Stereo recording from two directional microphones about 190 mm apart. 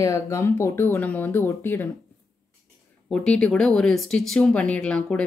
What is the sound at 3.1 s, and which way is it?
Speech, 5° left (ahead or behind).